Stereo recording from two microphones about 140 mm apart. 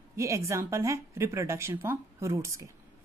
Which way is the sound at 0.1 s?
20° right (ahead or behind).